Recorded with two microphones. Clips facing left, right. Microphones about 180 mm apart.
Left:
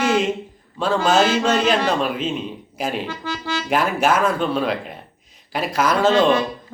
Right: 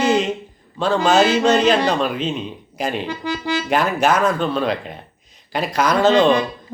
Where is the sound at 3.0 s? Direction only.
15° right (ahead or behind).